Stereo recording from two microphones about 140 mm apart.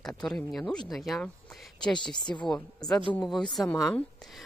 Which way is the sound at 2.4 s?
5° left (ahead or behind).